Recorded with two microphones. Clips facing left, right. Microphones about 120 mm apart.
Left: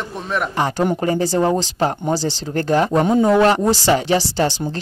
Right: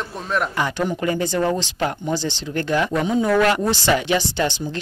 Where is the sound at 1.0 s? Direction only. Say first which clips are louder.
Left 1 dB; 35° left (ahead or behind).